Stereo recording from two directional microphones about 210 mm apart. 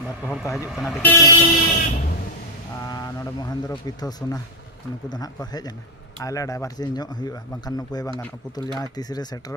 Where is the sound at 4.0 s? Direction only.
20° left (ahead or behind).